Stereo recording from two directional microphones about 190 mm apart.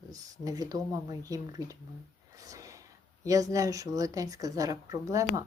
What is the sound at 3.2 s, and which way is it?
Speech, 15° right (ahead or behind).